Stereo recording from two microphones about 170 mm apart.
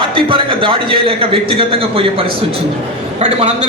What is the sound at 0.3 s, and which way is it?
A man's voice, 30° right (ahead or behind).